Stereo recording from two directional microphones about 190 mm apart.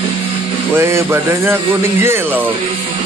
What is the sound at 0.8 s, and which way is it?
Speech, 10° right (ahead or behind).